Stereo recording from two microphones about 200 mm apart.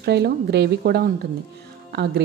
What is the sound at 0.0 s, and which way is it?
A woman's voice, 55° right (ahead or behind).